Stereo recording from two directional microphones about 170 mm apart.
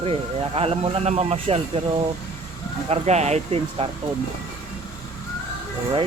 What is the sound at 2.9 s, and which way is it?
Speech, 40° right (ahead or behind).